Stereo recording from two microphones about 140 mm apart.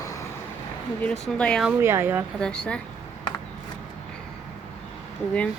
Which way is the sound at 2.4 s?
5° left (ahead or behind).